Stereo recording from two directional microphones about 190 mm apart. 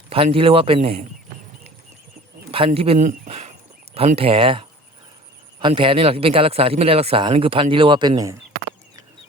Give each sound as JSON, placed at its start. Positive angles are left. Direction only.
{"t": 0.3, "sound": "speech", "side_deg": -30}
{"t": 2.5, "sound": "speech", "side_deg": -30}